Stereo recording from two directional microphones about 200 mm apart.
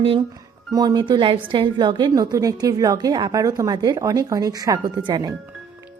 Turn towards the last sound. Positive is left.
turn(degrees=-10)  # may be behind; listen again after turning